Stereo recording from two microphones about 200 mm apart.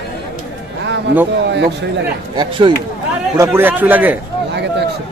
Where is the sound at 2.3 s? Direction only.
20° right (ahead or behind).